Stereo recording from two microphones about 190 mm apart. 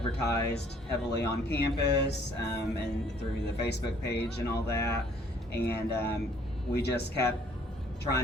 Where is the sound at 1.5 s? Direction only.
60° left (ahead or behind).